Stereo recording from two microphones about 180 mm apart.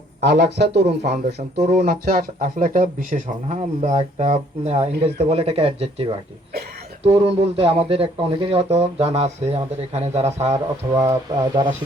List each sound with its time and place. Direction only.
0.2 s speech: 70° right (ahead or behind); by 1.7 s 40° right (ahead or behind)
1.8 s speech: 55° right (ahead or behind); by 10.6 s 40° right (ahead or behind)
10.9 s speech: 20° right (ahead or behind)